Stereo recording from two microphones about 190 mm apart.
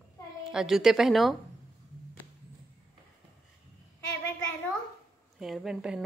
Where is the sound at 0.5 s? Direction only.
Centre (ahead or behind).